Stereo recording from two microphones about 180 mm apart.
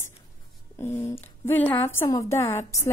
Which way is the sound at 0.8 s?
15° left (ahead or behind).